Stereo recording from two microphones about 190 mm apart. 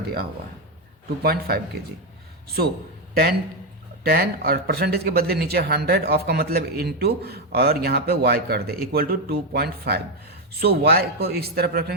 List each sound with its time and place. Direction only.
0.0 s a man's voice: 55° right (ahead or behind)
4.0 s speech: 55° right (ahead or behind)